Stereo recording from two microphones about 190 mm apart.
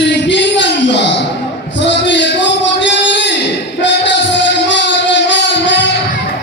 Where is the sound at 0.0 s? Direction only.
65° left (ahead or behind).